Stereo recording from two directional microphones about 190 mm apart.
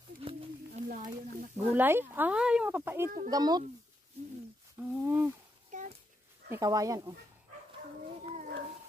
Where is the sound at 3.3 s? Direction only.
20° right (ahead or behind).